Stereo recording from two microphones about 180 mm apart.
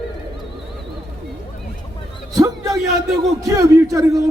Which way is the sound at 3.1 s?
20° right (ahead or behind).